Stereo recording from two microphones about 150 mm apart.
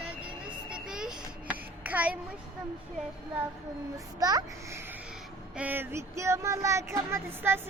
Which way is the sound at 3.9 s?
25° right (ahead or behind).